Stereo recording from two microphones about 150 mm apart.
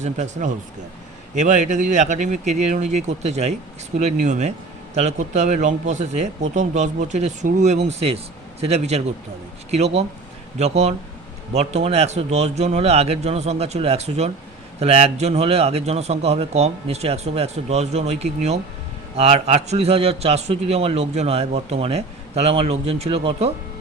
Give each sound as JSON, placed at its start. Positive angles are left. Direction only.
{"t": 0.0, "sound": "a man's voice", "side_deg": -55}